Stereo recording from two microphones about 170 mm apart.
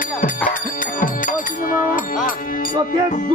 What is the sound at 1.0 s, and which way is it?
Music, 55° left (ahead or behind).